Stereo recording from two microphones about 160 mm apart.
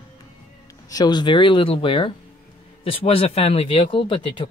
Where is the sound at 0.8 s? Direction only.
25° left (ahead or behind).